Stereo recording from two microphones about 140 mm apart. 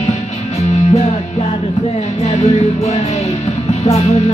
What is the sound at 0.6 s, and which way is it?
Music, 50° left (ahead or behind).